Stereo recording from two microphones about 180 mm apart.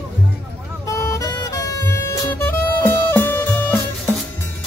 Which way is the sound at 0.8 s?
15° left (ahead or behind).